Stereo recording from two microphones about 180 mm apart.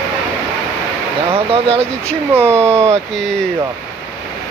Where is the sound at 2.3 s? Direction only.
15° right (ahead or behind).